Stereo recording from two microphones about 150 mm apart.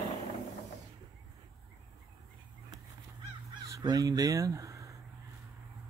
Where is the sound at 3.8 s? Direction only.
25° right (ahead or behind).